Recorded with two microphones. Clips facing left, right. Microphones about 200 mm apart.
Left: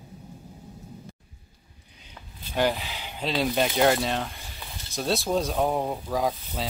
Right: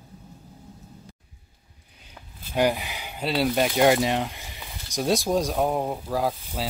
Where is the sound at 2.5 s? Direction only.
10° right (ahead or behind).